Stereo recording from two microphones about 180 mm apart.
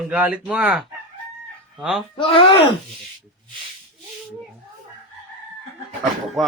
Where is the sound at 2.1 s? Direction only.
30° left (ahead or behind).